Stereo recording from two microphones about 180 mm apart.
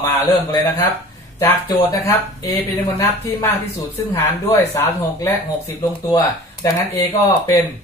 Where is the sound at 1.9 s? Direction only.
20° left (ahead or behind).